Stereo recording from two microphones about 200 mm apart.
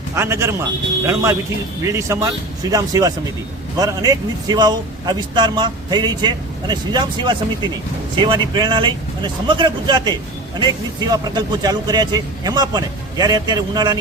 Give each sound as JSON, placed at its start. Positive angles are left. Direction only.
{"t": 0.2, "sound": "a man's voice", "side_deg": -15}